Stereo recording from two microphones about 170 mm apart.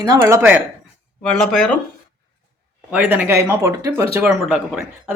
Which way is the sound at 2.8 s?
10° right (ahead or behind).